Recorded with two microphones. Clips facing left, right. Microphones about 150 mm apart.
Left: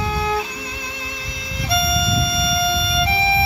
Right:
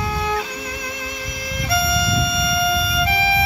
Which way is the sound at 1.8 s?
25° left (ahead or behind).